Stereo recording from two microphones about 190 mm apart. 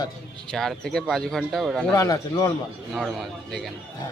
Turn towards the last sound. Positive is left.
turn(degrees=0)  # may be behind; listen again after turning